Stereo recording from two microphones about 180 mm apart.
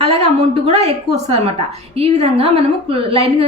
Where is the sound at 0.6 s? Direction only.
35° right (ahead or behind).